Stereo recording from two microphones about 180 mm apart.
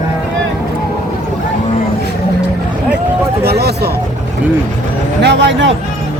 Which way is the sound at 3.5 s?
65° right (ahead or behind).